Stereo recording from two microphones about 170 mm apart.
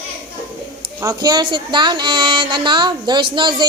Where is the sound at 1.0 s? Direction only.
20° right (ahead or behind).